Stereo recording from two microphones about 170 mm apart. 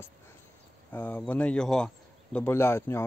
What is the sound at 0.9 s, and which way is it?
Speech, 10° left (ahead or behind).